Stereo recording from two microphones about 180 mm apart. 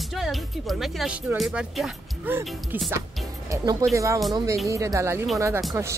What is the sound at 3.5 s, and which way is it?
A woman's voice, 20° right (ahead or behind).